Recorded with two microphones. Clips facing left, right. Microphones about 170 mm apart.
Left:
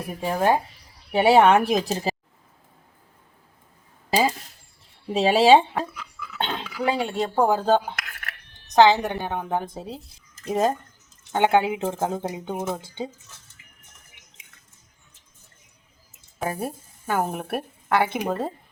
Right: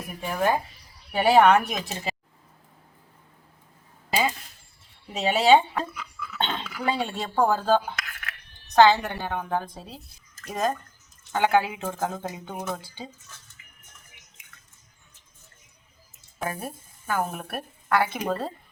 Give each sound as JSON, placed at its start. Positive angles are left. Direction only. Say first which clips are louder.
{"t": 0.1, "sound": "speech", "louder": "left 3 dB", "side_deg": 30}
{"t": 4.1, "sound": "speech", "louder": "left 4 dB", "side_deg": 35}
{"t": 6.1, "sound": "speech", "louder": "left 1 dB", "side_deg": 10}
{"t": 16.4, "sound": "a woman's voice", "louder": "left 4 dB", "side_deg": 25}